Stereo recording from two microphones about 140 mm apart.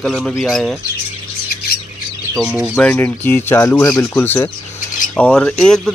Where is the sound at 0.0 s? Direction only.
Centre (ahead or behind).